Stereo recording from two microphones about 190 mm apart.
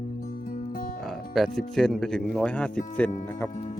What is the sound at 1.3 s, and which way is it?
Speech, centre (ahead or behind).